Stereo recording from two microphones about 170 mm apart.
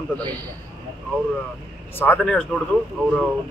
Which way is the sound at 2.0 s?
10° left (ahead or behind).